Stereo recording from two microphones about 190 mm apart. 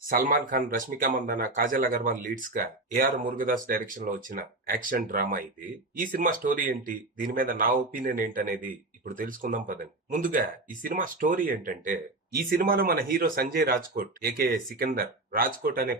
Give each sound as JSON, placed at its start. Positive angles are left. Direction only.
{"t": 0.1, "sound": "speech", "side_deg": -45}